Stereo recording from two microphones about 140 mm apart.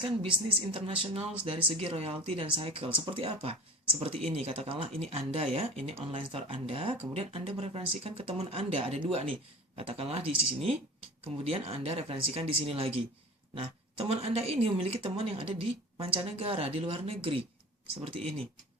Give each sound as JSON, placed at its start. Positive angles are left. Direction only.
{"t": 0.0, "sound": "a woman's voice", "side_deg": -40}
{"t": 11.4, "sound": "a woman's voice", "side_deg": -45}